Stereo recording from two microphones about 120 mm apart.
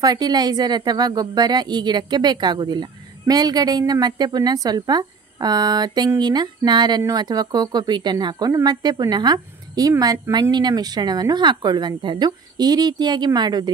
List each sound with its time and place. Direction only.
0.0 s speech: 35° right (ahead or behind)